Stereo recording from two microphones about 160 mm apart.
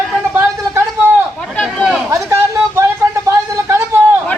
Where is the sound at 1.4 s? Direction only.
5° left (ahead or behind).